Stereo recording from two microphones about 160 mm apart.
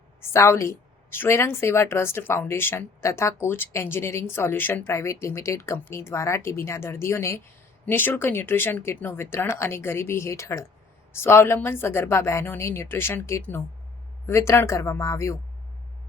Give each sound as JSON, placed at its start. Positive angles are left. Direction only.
{"t": 0.2, "sound": "a woman's voice", "side_deg": 15}